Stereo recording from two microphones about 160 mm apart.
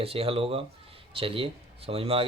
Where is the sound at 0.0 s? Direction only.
35° right (ahead or behind).